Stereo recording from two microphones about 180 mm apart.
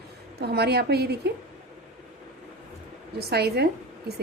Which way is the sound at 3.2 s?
60° right (ahead or behind).